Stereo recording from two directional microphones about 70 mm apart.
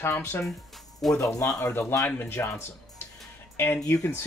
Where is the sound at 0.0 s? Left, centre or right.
Left.